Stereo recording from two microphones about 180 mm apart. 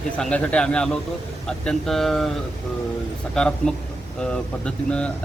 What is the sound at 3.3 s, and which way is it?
A man's voice, 5° left (ahead or behind).